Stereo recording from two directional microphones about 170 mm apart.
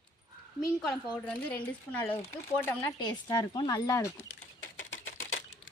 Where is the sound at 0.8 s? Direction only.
5° left (ahead or behind).